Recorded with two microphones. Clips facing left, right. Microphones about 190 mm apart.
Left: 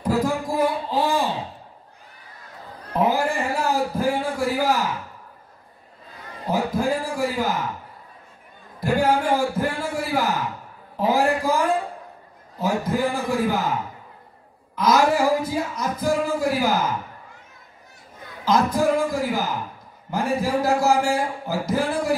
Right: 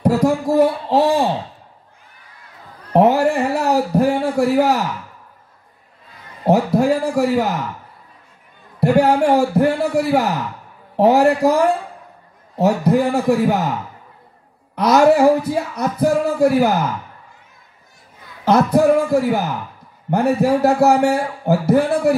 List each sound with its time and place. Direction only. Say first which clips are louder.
0.0 s a sound: right 7 dB; 70° right (ahead or behind)
2.9 s a sound: right 8 dB; 75° right (ahead or behind)
6.4 s a man's voice: right 8 dB; 75° right (ahead or behind)
8.7 s a man's voice: right 6 dB; 70° right (ahead or behind)
12.5 s a man's voice: right 8 dB; 75° right (ahead or behind)
14.8 s a man's voice: right 6 dB; 70° right (ahead or behind)
18.4 s a man's voice: right 6 dB; 65° right (ahead or behind)